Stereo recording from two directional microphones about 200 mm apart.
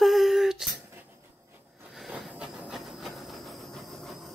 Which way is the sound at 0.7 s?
10° right (ahead or behind).